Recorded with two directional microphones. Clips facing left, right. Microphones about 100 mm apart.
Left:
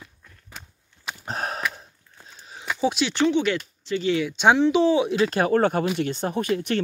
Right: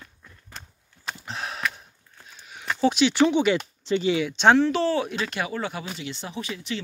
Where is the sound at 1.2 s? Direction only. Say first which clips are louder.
Left 6 dB; 45° left (ahead or behind).